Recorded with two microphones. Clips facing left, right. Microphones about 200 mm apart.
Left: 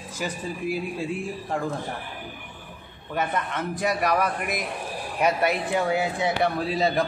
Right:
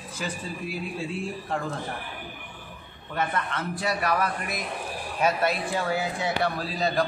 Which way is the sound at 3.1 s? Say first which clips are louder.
Left 2 dB; 15° left (ahead or behind).